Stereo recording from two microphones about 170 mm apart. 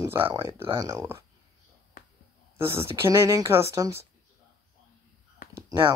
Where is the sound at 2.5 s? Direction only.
15° right (ahead or behind).